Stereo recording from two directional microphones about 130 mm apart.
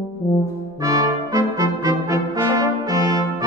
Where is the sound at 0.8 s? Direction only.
25° right (ahead or behind).